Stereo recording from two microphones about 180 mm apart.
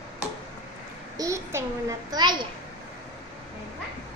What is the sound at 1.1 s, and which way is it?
A child's voice, 20° right (ahead or behind).